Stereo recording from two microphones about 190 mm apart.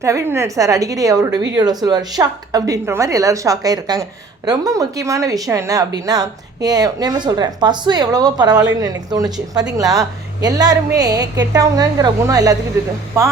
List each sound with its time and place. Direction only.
0.0 s a woman's voice: 15° right (ahead or behind)